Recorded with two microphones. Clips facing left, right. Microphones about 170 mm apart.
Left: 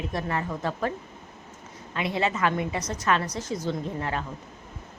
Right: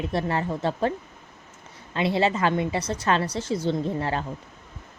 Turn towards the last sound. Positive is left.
turn(degrees=-30)  # may be behind; listen again after turning